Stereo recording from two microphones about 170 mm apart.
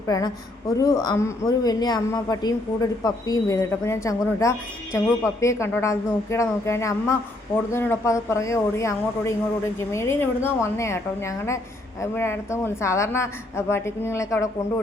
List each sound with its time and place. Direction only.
0.1 s a woman's voice: 25° left (ahead or behind)
12.1 s a woman's voice: 15° left (ahead or behind)